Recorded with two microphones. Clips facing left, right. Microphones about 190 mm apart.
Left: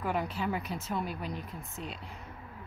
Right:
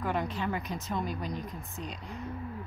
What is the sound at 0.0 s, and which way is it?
Speech, 5° left (ahead or behind).